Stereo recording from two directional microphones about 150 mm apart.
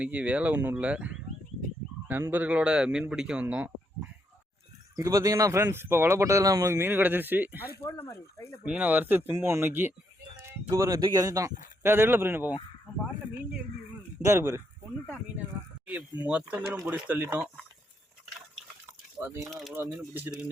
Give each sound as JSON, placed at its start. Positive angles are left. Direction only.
{"t": 0.0, "sound": "a man's voice", "side_deg": -10}
{"t": 4.9, "sound": "speech", "side_deg": -20}
{"t": 7.8, "sound": "speech", "side_deg": 15}
{"t": 8.6, "sound": "speech", "side_deg": -10}
{"t": 14.3, "sound": "speech", "side_deg": -15}
{"t": 16.2, "sound": "speech", "side_deg": -10}
{"t": 19.2, "sound": "speech", "side_deg": -15}
{"t": 19.5, "sound": "speech", "side_deg": 0}